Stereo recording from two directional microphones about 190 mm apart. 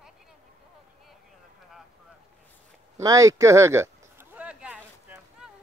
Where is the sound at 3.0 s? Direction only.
15° right (ahead or behind).